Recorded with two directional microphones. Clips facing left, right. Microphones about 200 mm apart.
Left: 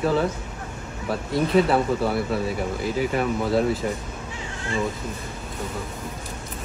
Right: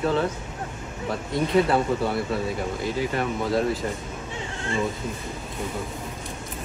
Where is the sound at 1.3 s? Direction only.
Centre (ahead or behind).